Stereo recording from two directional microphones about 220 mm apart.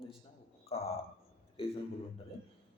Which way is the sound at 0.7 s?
25° left (ahead or behind).